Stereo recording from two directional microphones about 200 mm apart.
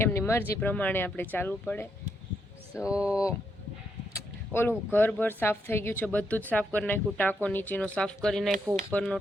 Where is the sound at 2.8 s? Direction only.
5° right (ahead or behind).